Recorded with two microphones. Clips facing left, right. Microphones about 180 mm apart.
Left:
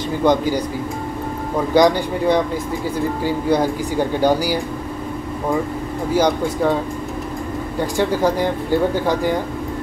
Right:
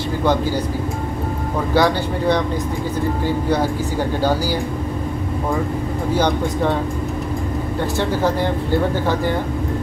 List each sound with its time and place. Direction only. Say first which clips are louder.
0.2 s speech: left 3 dB; 15° left (ahead or behind)
1.7 s speech: left 3 dB; 15° left (ahead or behind)
6.1 s speech: left 2 dB; 10° left (ahead or behind)
8.0 s speech: left 2 dB; 10° left (ahead or behind)